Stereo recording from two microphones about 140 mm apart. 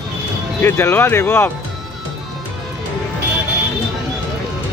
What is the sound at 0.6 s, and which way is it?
Speech, 15° left (ahead or behind).